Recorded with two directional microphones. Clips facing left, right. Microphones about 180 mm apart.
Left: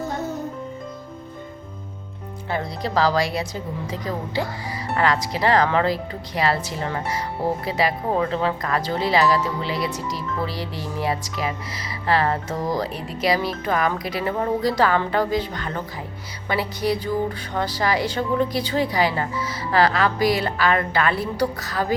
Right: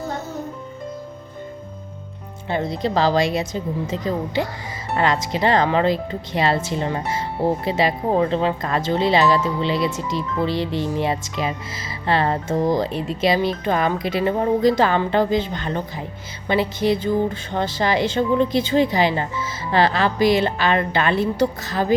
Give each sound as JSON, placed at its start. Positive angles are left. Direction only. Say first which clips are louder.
{"t": 2.5, "sound": "a woman's voice", "louder": "right 4 dB", "side_deg": -20}